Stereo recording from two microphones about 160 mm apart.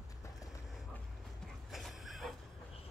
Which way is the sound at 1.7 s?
Centre (ahead or behind).